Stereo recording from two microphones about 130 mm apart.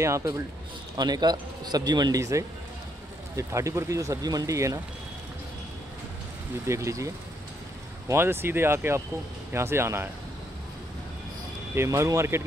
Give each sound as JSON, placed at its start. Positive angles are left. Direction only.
{"t": 0.0, "sound": "a man's voice", "side_deg": -25}
{"t": 6.7, "sound": "speech", "side_deg": -25}
{"t": 8.1, "sound": "speech", "side_deg": -20}
{"t": 11.7, "sound": "speech", "side_deg": -20}